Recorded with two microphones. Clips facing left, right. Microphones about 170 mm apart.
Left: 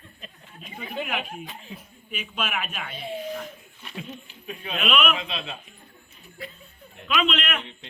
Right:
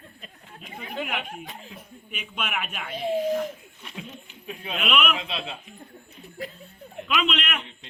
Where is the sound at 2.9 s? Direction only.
90° right.